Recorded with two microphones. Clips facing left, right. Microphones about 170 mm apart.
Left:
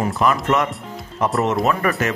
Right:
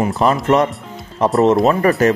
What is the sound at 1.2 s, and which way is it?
Speech, 30° right (ahead or behind).